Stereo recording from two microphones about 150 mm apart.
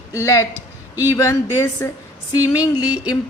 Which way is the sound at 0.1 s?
20° left (ahead or behind).